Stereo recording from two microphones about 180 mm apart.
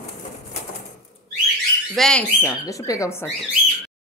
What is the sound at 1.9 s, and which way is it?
A woman's voice, 5° left (ahead or behind).